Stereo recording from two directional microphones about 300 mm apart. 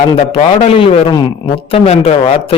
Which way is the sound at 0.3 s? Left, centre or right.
Centre.